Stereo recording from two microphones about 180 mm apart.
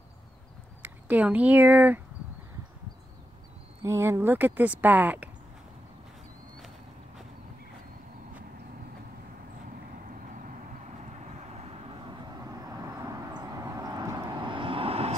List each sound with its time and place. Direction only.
0.8 s speech: 10° right (ahead or behind)
3.8 s speech: 15° right (ahead or behind)
12.4 s vehicle: 20° right (ahead or behind)